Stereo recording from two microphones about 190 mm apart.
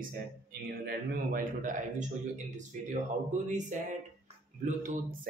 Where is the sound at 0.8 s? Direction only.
50° right (ahead or behind).